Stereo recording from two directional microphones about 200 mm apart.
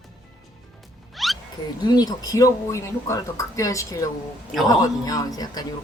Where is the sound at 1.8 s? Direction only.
20° left (ahead or behind).